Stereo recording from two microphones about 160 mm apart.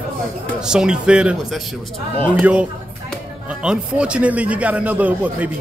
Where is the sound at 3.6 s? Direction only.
5° right (ahead or behind).